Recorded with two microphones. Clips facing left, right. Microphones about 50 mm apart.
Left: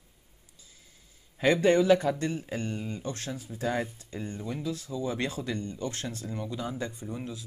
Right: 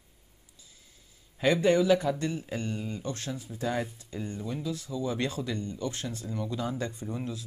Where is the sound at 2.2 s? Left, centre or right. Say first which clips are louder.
Left 1 dB; left.